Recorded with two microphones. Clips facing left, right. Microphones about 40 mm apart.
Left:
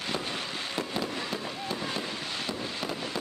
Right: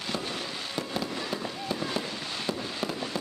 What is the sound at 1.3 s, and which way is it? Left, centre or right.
Fireworks, centre.